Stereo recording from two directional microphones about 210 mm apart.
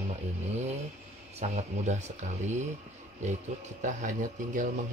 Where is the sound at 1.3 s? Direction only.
35° right (ahead or behind).